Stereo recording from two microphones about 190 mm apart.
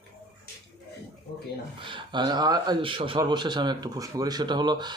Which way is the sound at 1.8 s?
25° right (ahead or behind).